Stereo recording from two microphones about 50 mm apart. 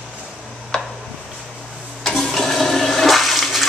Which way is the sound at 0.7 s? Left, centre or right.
Centre.